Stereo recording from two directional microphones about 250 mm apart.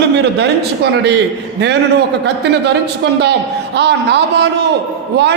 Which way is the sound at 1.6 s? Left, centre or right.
Right.